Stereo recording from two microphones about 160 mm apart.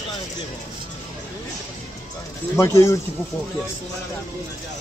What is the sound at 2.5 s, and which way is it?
Speech, 15° left (ahead or behind).